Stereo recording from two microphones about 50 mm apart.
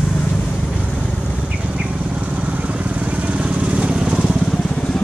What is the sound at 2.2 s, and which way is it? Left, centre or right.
Vehicle, right.